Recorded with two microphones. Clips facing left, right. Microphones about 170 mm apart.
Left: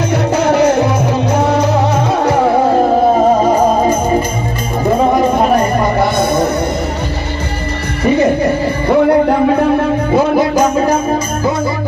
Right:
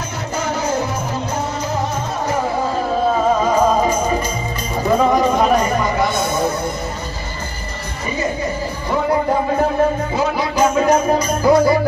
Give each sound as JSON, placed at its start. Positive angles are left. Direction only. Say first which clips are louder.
{"t": 0.3, "sound": "music", "louder": "left 9 dB", "side_deg": 70}
{"t": 8.0, "sound": "music", "louder": "left 11 dB", "side_deg": 70}
{"t": 10.1, "sound": "music", "louder": "left 8 dB", "side_deg": 50}
{"t": 11.4, "sound": "music", "louder": "right 5 dB", "side_deg": 25}